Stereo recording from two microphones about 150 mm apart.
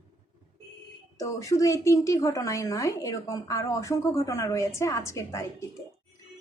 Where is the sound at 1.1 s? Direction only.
20° left (ahead or behind).